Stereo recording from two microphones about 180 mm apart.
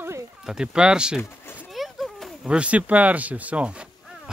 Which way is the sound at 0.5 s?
5° right (ahead or behind).